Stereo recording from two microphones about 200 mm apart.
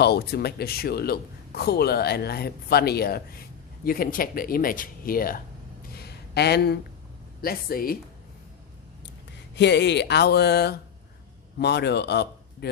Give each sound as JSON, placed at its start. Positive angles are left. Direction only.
{"t": 0.0, "sound": "a man's voice", "side_deg": 55}
{"t": 5.9, "sound": "a sound", "side_deg": 55}
{"t": 7.4, "sound": "a man's voice", "side_deg": 45}
{"t": 9.6, "sound": "speech", "side_deg": 60}